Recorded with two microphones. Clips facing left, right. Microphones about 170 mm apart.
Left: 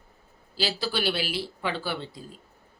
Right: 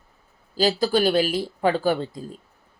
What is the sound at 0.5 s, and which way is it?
Speech, 45° right (ahead or behind).